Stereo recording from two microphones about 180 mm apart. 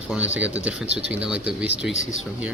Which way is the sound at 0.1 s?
5° right (ahead or behind).